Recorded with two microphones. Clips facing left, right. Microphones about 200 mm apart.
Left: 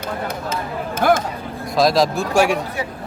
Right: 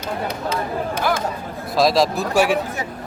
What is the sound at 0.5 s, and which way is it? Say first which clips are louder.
Speech: right 2 dB; 50° left (ahead or behind).